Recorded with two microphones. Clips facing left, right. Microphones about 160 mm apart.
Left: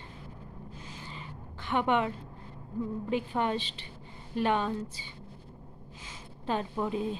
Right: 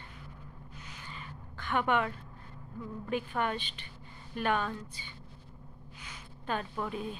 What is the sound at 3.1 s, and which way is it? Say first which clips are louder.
A woman's voice: left 1 dB; 25° left (ahead or behind).